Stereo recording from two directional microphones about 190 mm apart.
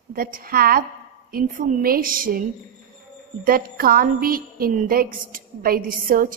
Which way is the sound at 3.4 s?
50° right (ahead or behind).